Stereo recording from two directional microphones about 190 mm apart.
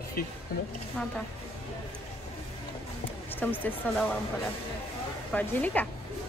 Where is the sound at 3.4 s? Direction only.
10° left (ahead or behind).